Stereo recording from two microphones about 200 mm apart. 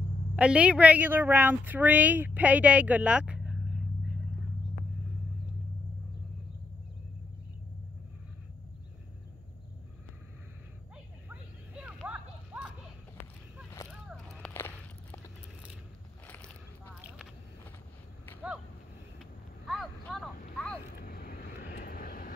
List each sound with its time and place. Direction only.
0.4 s a woman's voice: 5° right (ahead or behind)
11.2 s a sound: 5° right (ahead or behind)
14.0 s walk: centre (ahead or behind)
16.3 s a sound: 5° left (ahead or behind)
19.1 s vehicle: centre (ahead or behind)
20.5 s boat: 5° left (ahead or behind)
20.9 s vehicle: 55° left (ahead or behind)